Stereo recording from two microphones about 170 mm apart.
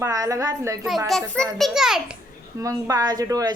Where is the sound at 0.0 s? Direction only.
20° right (ahead or behind).